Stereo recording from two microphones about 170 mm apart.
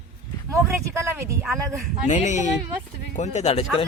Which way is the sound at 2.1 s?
45° left (ahead or behind).